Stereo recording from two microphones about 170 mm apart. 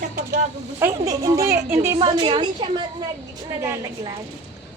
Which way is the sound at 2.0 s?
30° right (ahead or behind).